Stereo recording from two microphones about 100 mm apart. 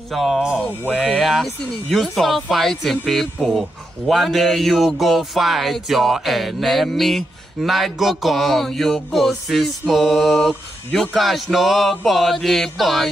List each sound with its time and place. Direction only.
0.1 s speech: centre (ahead or behind)